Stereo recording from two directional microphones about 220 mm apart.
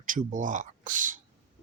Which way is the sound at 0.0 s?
35° right (ahead or behind).